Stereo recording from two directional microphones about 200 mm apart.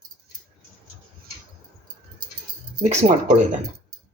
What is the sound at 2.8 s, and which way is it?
Speech, 35° right (ahead or behind).